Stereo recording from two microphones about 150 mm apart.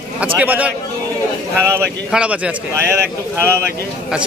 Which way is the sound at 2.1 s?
10° right (ahead or behind).